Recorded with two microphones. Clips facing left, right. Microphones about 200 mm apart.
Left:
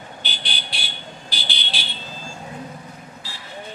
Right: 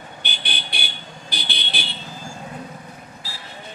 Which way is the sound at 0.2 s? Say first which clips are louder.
Right 2 dB; 55° right (ahead or behind).